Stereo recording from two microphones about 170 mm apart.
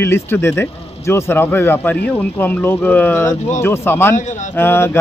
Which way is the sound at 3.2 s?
45° left (ahead or behind).